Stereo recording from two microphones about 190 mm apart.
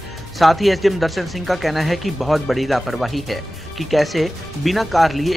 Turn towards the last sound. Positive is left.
turn(degrees=0)  # may be behind; listen again after turning